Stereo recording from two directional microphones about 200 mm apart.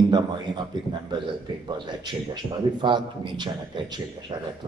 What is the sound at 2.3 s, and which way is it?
A man's voice, 25° right (ahead or behind).